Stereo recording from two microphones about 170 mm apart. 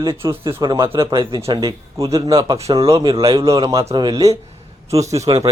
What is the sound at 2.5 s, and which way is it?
Speech, 35° right (ahead or behind).